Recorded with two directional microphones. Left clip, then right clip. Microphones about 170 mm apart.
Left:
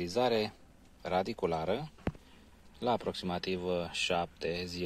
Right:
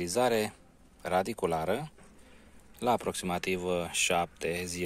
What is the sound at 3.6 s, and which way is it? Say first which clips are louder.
Speech: right 3 dB; 30° right (ahead or behind).